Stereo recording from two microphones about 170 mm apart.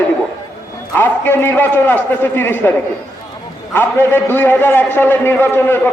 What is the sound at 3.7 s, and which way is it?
A man's voice, 10° left (ahead or behind).